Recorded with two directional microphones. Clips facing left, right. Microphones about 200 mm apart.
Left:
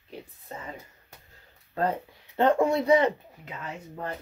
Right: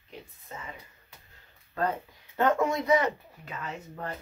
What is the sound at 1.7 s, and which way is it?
Speech, 30° left (ahead or behind).